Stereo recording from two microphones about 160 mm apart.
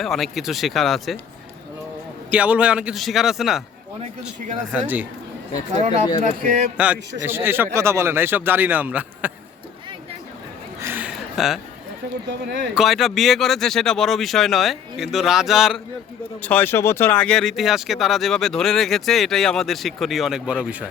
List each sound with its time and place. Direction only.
0.0 s speech: centre (ahead or behind)
2.3 s speech: 10° right (ahead or behind)
4.7 s a man's voice: 10° right (ahead or behind)
5.7 s speech: 45° right (ahead or behind)
6.1 s speech: 55° right (ahead or behind)
6.7 s a man's voice: 10° right (ahead or behind)
10.8 s a sound: 15° right (ahead or behind)
12.7 s speech: centre (ahead or behind)
16.4 s speech: 10° left (ahead or behind); by 20.8 s 10° right (ahead or behind)